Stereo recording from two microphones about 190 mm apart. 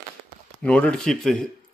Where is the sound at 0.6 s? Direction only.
5° left (ahead or behind).